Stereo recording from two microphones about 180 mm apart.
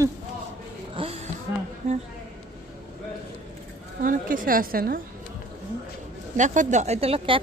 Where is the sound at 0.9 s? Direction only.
35° right (ahead or behind).